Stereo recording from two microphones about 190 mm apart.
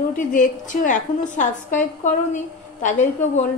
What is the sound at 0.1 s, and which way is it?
A woman's voice, 40° left (ahead or behind).